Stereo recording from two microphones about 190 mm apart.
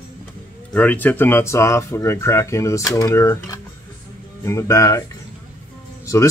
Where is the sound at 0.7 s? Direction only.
10° left (ahead or behind).